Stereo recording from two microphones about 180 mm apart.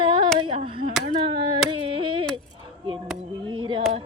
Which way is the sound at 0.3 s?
30° right (ahead or behind).